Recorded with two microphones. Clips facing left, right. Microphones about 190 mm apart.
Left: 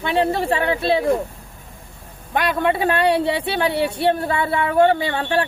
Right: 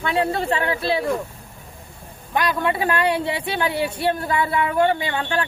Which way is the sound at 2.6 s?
25° left (ahead or behind).